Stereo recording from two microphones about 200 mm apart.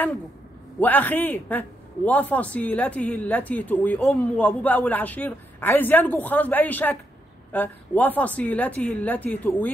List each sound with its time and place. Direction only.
0.7 s a man's voice: 10° left (ahead or behind)